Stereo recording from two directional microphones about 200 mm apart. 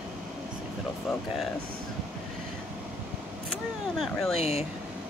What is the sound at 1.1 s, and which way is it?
Speech, centre (ahead or behind).